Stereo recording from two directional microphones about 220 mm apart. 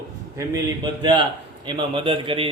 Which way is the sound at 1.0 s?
20° right (ahead or behind).